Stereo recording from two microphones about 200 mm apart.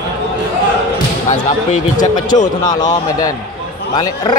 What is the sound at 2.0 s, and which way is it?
Speech, 20° left (ahead or behind).